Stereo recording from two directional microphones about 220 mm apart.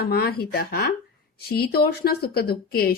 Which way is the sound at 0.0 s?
45° left (ahead or behind).